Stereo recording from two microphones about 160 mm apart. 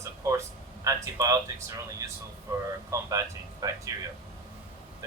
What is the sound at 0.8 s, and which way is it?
Speech, 20° right (ahead or behind).